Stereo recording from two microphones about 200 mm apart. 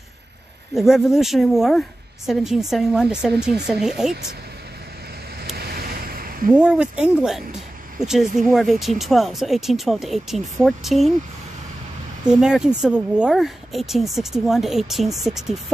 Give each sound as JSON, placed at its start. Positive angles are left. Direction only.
{"t": 0.7, "sound": "a woman's voice", "side_deg": 0}
{"t": 5.4, "sound": "vehicle", "side_deg": -50}
{"t": 6.5, "sound": "a woman's voice", "side_deg": -5}
{"t": 12.3, "sound": "a woman's voice", "side_deg": -5}